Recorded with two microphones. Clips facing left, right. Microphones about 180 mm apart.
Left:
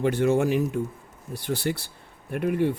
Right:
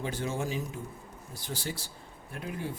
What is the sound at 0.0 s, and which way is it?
Speech, 65° left (ahead or behind).